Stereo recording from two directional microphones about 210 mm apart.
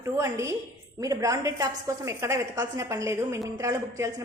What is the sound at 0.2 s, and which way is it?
A woman's voice, 15° right (ahead or behind).